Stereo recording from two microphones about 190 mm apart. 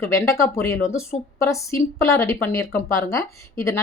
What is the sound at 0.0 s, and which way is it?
Speech, 15° left (ahead or behind).